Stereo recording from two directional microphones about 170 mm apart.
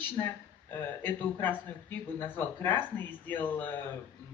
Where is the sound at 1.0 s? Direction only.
10° left (ahead or behind).